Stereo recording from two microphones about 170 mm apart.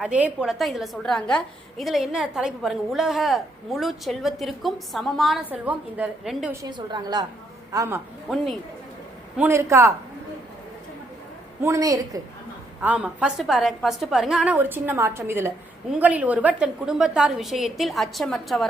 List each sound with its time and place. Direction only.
0.0 s a woman's voice: 10° right (ahead or behind)
6.6 s a woman's voice: 25° right (ahead or behind)
9.4 s a woman's voice: 15° right (ahead or behind)
11.6 s a woman's voice: 20° right (ahead or behind)
12.8 s a woman's voice: 5° right (ahead or behind)